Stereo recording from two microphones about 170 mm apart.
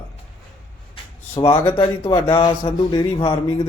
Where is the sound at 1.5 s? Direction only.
20° left (ahead or behind).